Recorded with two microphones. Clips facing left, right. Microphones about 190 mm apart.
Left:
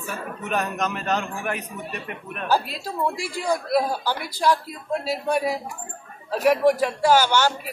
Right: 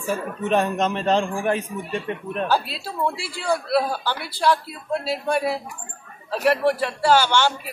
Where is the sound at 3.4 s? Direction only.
15° left (ahead or behind).